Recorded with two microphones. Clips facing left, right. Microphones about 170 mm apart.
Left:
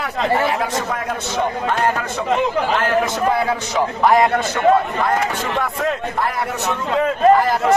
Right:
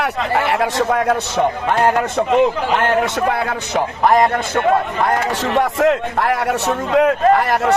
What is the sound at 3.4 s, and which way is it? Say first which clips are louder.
A man's voice: even; 55° right (ahead or behind).